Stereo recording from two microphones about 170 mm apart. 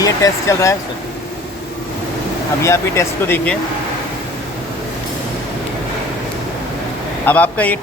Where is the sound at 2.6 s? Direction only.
15° left (ahead or behind).